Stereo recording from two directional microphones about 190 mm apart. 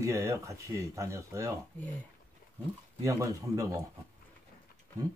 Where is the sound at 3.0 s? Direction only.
15° right (ahead or behind).